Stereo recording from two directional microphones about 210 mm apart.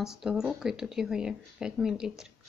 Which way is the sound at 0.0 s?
Centre (ahead or behind).